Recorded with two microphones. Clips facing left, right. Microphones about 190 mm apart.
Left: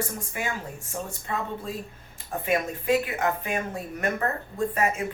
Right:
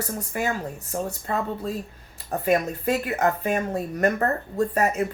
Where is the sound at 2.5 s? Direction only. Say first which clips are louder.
Right 2 dB; 40° right (ahead or behind).